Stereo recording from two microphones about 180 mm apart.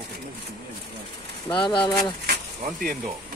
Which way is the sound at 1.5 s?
25° left (ahead or behind).